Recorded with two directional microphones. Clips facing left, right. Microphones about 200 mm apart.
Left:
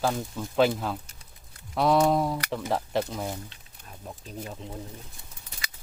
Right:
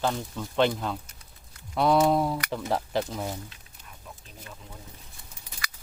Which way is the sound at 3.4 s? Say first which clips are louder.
Left 1 dB; 35° left (ahead or behind).